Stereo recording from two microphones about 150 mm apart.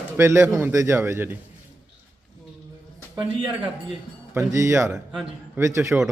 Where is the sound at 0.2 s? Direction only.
20° right (ahead or behind).